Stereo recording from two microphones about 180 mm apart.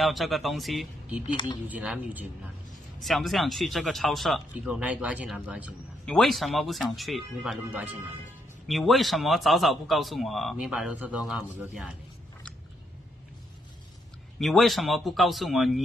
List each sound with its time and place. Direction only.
0.0 s a man's voice: centre (ahead or behind)
1.3 s speech: 25° left (ahead or behind)
1.7 s a man's voice: 10° right (ahead or behind)
14.4 s a man's voice: centre (ahead or behind)